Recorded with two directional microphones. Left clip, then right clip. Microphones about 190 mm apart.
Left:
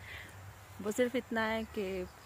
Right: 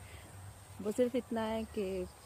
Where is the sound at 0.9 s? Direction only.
5° right (ahead or behind).